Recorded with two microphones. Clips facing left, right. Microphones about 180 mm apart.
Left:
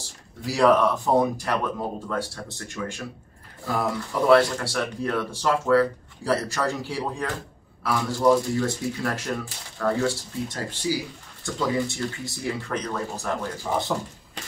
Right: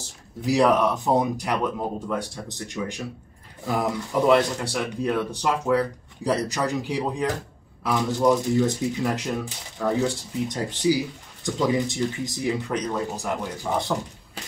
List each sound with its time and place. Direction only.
0.5 s speech: 20° right (ahead or behind)
13.7 s speech: centre (ahead or behind)